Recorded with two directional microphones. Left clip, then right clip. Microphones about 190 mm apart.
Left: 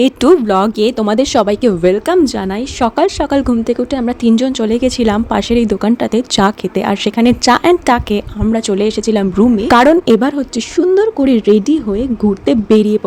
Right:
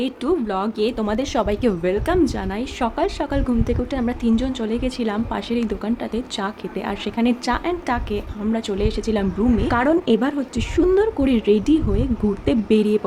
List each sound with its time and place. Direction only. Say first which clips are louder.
0.0 s a woman's voice: left 13 dB; 50° left (ahead or behind); by 13.0 s 30° left (ahead or behind)